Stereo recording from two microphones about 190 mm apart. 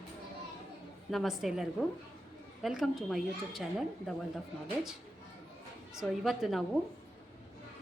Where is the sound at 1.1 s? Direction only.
Centre (ahead or behind).